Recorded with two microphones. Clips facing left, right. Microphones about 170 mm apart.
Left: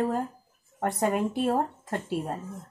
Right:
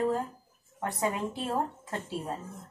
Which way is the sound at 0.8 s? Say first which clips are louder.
Left 5 dB; 55° left (ahead or behind).